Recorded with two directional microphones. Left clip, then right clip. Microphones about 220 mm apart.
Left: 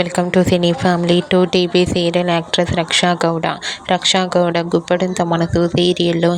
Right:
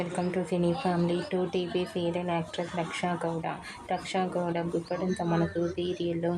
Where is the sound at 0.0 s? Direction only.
30° left (ahead or behind).